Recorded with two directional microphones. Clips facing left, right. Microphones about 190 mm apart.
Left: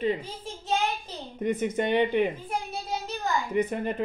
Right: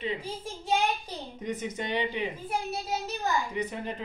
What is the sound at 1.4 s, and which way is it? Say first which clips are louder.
Speech: left 8 dB; 55° left (ahead or behind).